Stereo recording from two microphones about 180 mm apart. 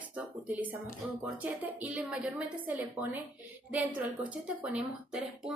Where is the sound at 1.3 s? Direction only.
5° right (ahead or behind).